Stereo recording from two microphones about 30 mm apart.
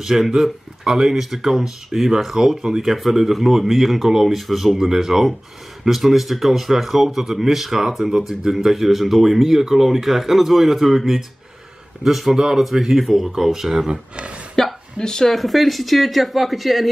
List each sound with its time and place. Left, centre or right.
0.0 s speech: centre
8.0 s speech: right
8.5 s speech: centre
12.4 s speech: centre
14.1 s speech: right
14.5 s a sound: centre
15.0 s speech: left
15.2 s speech: centre